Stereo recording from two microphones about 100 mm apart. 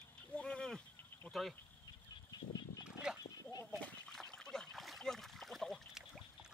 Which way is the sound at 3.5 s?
35° left (ahead or behind).